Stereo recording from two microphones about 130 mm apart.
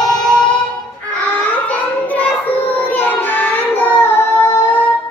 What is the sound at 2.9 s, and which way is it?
Child singing, 15° left (ahead or behind).